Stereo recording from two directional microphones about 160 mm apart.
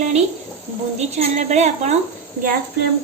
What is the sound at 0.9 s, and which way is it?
A woman's voice, 45° right (ahead or behind).